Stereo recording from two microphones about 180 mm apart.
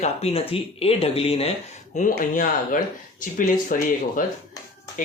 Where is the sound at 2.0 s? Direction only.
45° left (ahead or behind).